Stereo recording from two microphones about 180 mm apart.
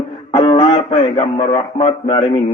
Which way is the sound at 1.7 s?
30° left (ahead or behind).